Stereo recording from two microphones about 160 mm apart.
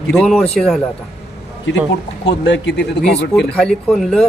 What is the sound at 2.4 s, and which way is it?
Speech, 90° left.